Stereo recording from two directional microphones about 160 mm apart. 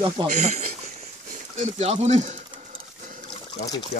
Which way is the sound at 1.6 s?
45° right (ahead or behind).